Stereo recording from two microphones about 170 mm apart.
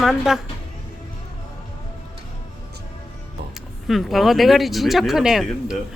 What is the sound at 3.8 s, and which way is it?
Speech, centre (ahead or behind).